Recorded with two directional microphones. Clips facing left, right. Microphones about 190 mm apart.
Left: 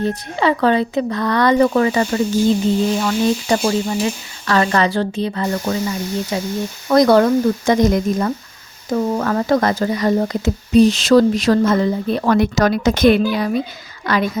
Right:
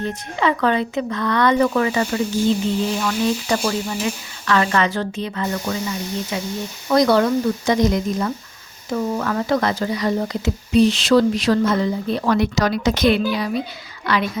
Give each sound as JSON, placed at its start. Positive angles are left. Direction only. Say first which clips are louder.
{"t": 0.0, "sound": "stir", "louder": "left 3 dB", "side_deg": 35}
{"t": 6.9, "sound": "speech", "louder": "left 4 dB", "side_deg": 50}